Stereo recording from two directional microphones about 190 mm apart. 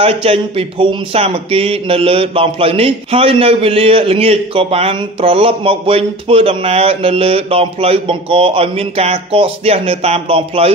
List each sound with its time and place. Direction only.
0.0 s speech: 30° right (ahead or behind)